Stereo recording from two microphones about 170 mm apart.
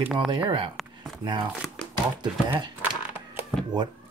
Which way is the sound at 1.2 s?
25° right (ahead or behind).